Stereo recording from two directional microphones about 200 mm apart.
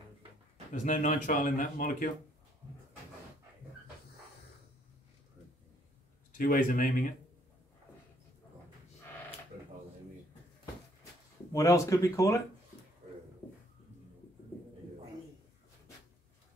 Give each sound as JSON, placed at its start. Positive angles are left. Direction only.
{"t": 0.8, "sound": "speech", "side_deg": 40}
{"t": 6.3, "sound": "speech", "side_deg": 45}
{"t": 11.5, "sound": "speech", "side_deg": 15}
{"t": 13.4, "sound": "a sound", "side_deg": 10}